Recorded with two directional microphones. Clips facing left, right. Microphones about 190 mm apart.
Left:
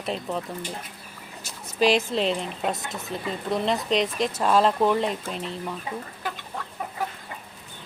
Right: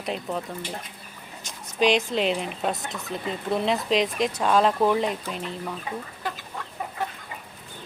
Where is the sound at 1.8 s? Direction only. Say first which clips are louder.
Even; 5° left (ahead or behind).